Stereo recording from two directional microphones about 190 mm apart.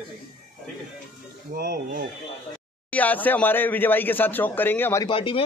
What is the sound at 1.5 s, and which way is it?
Speech, 55° right (ahead or behind).